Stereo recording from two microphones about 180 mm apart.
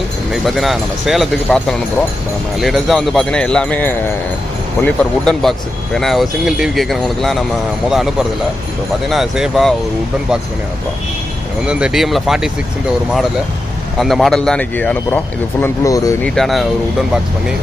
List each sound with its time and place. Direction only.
0.3 s speech: centre (ahead or behind)
11.6 s speech: 5° right (ahead or behind)
14.0 s speech: centre (ahead or behind); by 16.1 s 20° left (ahead or behind)
16.2 s speech: 5° left (ahead or behind)